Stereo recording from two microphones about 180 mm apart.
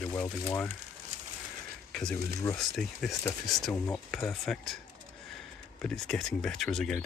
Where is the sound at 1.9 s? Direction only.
5° left (ahead or behind).